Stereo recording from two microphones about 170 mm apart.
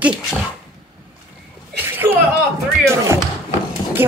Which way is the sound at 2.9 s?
15° right (ahead or behind).